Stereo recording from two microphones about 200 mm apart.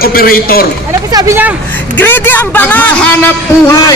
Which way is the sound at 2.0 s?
10° left (ahead or behind).